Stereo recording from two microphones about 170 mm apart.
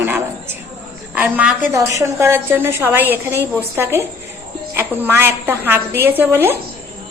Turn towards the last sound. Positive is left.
turn(degrees=-15)  # may be behind; listen again after turning